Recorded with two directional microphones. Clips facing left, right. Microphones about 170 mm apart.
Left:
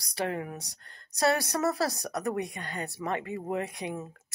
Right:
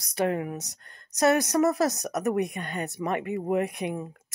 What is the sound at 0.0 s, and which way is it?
Speech, 20° right (ahead or behind).